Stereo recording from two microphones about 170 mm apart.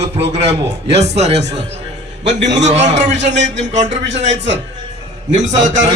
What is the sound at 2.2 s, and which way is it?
Speech, 90° right.